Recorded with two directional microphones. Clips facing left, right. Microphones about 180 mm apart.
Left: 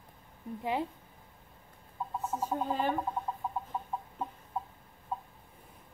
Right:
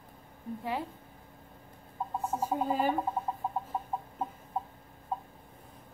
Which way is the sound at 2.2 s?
10° right (ahead or behind).